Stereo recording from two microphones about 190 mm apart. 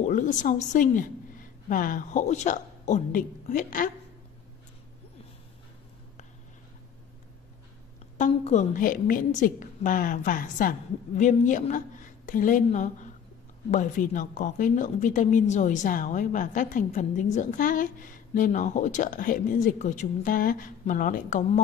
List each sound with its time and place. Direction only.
0.0 s speech: 40° left (ahead or behind)
8.2 s a woman's voice: 40° left (ahead or behind)